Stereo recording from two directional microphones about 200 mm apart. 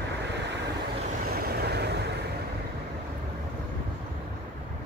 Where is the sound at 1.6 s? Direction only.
55° right (ahead or behind).